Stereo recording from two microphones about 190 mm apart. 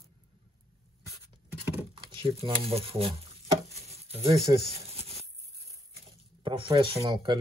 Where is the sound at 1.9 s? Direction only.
30° right (ahead or behind).